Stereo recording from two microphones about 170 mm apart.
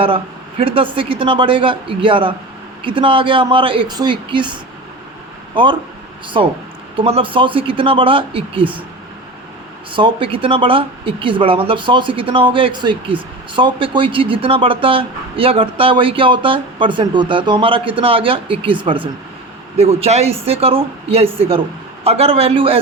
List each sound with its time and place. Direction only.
0.6 s speech: 30° right (ahead or behind)
6.2 s speech: 30° right (ahead or behind)
9.9 s speech: 30° right (ahead or behind)